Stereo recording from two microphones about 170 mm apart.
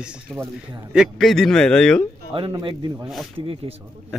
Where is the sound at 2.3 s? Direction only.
30° right (ahead or behind).